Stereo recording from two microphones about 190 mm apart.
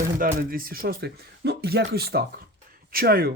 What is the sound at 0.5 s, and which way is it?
Speech, 50° right (ahead or behind).